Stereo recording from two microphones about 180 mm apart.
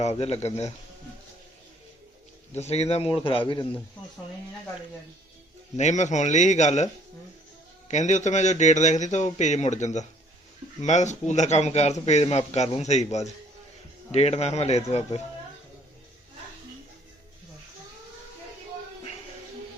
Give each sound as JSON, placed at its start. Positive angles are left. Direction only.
{"t": 0.0, "sound": "a man's voice", "side_deg": 35}
{"t": 2.6, "sound": "a man's voice", "side_deg": 35}
{"t": 5.7, "sound": "a man's voice", "side_deg": 40}
{"t": 7.9, "sound": "a man's voice", "side_deg": 40}